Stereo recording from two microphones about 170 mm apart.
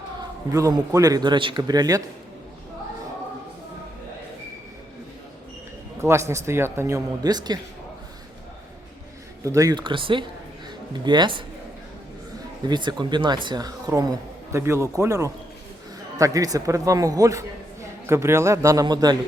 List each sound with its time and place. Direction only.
0.5 s speech: 20° right (ahead or behind)
6.0 s a man's voice: 15° right (ahead or behind)
9.4 s speech: 20° right (ahead or behind)
12.6 s a man's voice: 25° right (ahead or behind)